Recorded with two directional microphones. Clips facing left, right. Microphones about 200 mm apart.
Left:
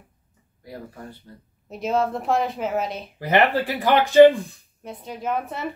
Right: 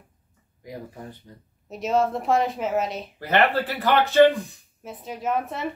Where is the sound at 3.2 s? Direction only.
15° left (ahead or behind).